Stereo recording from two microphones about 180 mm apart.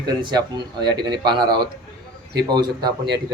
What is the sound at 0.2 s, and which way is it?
Speech, 25° right (ahead or behind).